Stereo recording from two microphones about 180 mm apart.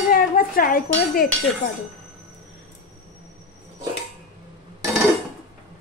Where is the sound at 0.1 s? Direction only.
50° left (ahead or behind).